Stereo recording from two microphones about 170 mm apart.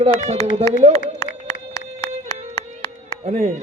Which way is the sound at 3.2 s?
35° right (ahead or behind).